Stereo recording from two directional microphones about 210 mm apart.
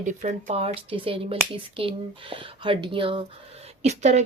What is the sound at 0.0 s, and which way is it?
Speech, 35° right (ahead or behind).